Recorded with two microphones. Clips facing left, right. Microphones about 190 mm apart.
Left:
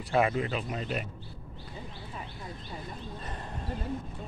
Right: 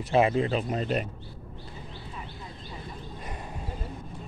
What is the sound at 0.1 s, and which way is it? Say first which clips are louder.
Speech: right 4 dB; 25° right (ahead or behind).